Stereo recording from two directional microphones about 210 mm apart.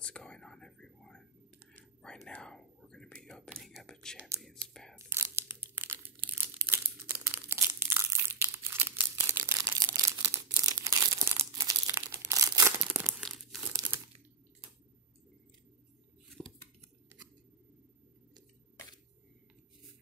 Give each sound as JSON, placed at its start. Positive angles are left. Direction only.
{"t": 0.0, "sound": "whispering", "side_deg": 5}
{"t": 4.9, "sound": "tearing", "side_deg": -10}
{"t": 6.4, "sound": "crumpling", "side_deg": -10}
{"t": 12.3, "sound": "a sound", "side_deg": -15}
{"t": 13.6, "sound": "crumpling", "side_deg": -15}
{"t": 16.4, "sound": "scissors", "side_deg": 0}